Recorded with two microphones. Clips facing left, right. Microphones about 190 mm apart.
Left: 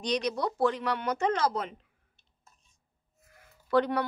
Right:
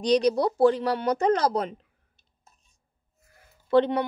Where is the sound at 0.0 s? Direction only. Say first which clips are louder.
Right 8 dB; 35° right (ahead or behind).